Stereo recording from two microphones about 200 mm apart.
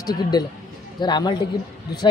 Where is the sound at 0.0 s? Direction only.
20° left (ahead or behind).